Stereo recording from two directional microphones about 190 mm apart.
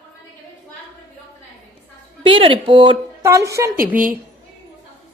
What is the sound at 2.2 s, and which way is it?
Speech, 30° right (ahead or behind).